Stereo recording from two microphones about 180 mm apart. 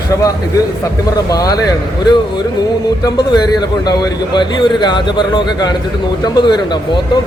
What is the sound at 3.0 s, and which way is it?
A man's voice, 20° left (ahead or behind).